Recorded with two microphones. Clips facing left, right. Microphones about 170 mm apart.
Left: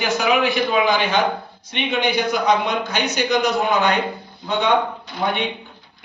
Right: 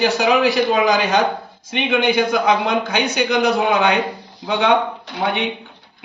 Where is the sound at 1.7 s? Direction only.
90° right.